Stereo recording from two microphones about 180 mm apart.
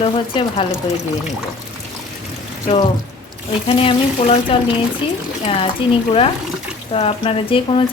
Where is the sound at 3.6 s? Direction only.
30° left (ahead or behind).